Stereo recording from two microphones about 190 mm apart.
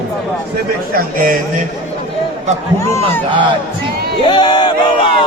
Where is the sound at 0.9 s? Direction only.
45° right (ahead or behind).